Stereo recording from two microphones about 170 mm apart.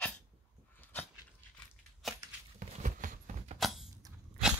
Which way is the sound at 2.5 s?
50° right (ahead or behind).